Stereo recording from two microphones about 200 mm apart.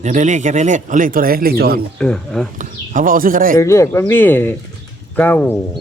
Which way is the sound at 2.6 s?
40° right (ahead or behind).